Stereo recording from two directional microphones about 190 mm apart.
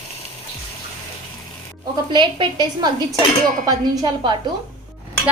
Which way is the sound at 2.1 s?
25° right (ahead or behind).